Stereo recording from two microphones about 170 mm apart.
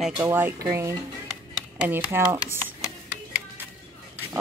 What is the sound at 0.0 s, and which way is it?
Speech, 10° right (ahead or behind).